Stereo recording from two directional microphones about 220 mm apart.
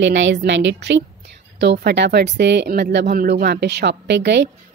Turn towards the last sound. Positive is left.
turn(degrees=-50)  # may be behind; listen again after turning